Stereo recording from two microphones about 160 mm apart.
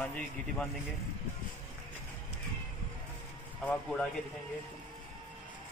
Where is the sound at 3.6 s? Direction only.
5° left (ahead or behind).